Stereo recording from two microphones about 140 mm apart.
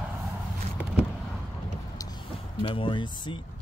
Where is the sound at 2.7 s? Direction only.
35° left (ahead or behind).